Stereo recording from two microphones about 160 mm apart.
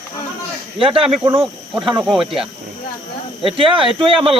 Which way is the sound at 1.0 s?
35° right (ahead or behind).